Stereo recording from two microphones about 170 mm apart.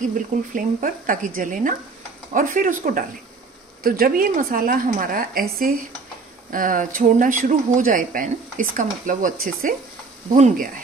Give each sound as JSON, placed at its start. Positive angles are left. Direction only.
{"t": 0.6, "sound": "a woman's voice", "side_deg": -50}
{"t": 10.3, "sound": "speech", "side_deg": -45}